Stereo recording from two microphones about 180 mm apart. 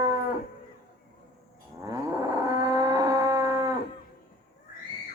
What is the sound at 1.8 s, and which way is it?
Livestock, 15° right (ahead or behind).